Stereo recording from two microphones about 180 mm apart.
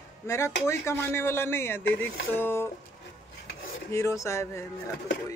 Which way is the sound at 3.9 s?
15° left (ahead or behind).